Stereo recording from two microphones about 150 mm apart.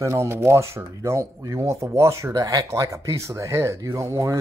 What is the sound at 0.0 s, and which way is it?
Speech, 20° right (ahead or behind).